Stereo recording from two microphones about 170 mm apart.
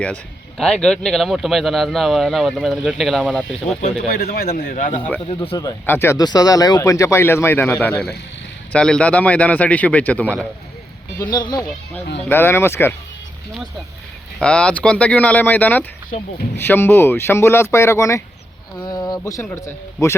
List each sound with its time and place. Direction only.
0.0 s speech: 5° left (ahead or behind)
4.1 s a man's voice: 65° left (ahead or behind)
5.2 s a man's voice: 35° left (ahead or behind)
5.5 s speech: 15° left (ahead or behind)
11.2 s speech: 25° left (ahead or behind)
12.3 s speech: 15° left (ahead or behind)
14.3 s a man's voice: 5° left (ahead or behind)